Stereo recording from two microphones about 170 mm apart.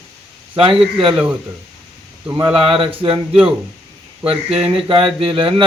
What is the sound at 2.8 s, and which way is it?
Speech, 30° right (ahead or behind).